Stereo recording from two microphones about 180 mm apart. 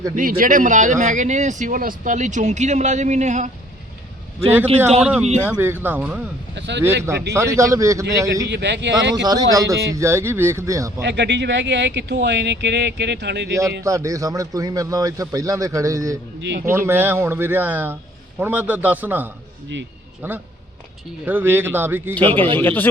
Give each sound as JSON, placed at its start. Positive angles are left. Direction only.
{"t": 0.2, "sound": "speech", "side_deg": -50}
{"t": 5.0, "sound": "speech", "side_deg": -5}
{"t": 6.5, "sound": "speech", "side_deg": -75}
{"t": 6.8, "sound": "speech", "side_deg": -15}
{"t": 8.4, "sound": "speech", "side_deg": -70}
{"t": 9.1, "sound": "speech", "side_deg": -20}
{"t": 11.0, "sound": "speech", "side_deg": -70}
{"t": 13.5, "sound": "a man's voice", "side_deg": -15}
{"t": 22.5, "sound": "speech", "side_deg": 10}